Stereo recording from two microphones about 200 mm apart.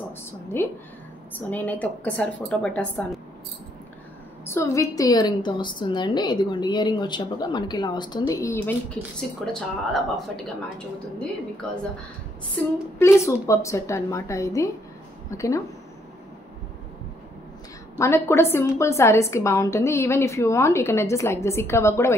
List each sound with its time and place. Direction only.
0.2 s a sound: 10° left (ahead or behind)
1.5 s a woman's voice: 10° left (ahead or behind)
4.5 s a woman's voice: 15° left (ahead or behind)
11.6 s speech: 5° left (ahead or behind)
12.5 s a woman's voice: 15° left (ahead or behind)
17.9 s a woman's voice: 15° left (ahead or behind)